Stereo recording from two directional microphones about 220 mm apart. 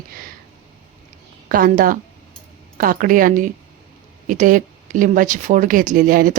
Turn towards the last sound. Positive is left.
turn(degrees=-40)  # may be behind; listen again after turning